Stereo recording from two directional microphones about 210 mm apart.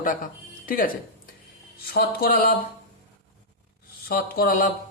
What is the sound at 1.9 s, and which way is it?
Speech, 45° left (ahead or behind).